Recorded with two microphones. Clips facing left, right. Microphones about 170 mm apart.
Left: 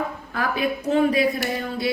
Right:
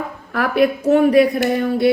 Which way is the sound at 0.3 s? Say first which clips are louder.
Right 8 dB; 70° right (ahead or behind).